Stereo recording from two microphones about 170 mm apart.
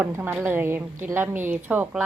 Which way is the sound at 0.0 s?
10° right (ahead or behind).